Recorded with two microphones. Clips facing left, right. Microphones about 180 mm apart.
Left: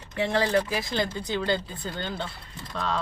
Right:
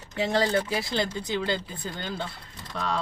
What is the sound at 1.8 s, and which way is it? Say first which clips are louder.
Speech: left 1 dB; 20° left (ahead or behind).